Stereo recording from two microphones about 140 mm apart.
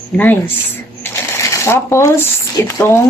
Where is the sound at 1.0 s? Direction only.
20° left (ahead or behind).